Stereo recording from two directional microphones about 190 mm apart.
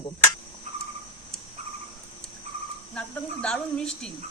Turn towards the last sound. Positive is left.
turn(degrees=5)  # may be behind; listen again after turning